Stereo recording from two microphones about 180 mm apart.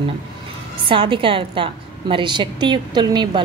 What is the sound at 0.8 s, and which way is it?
Speech, 30° right (ahead or behind).